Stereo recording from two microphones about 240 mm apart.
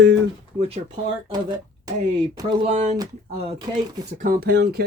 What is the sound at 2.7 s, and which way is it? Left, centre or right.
Speech, right.